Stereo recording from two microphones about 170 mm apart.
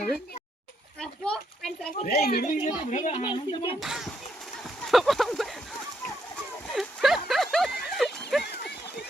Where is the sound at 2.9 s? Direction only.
45° left (ahead or behind).